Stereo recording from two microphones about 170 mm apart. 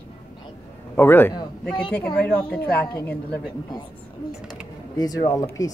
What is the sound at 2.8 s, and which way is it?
Speech, 15° left (ahead or behind).